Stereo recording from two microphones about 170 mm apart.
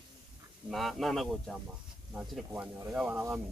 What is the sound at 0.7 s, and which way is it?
Speech, centre (ahead or behind).